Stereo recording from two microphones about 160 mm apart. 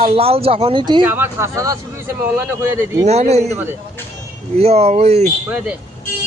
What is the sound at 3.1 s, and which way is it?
Speech, 40° right (ahead or behind).